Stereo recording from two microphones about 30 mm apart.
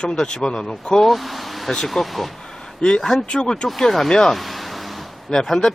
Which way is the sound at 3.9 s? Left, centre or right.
Centre.